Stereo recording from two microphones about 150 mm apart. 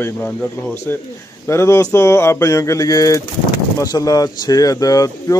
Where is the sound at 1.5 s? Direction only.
20° left (ahead or behind).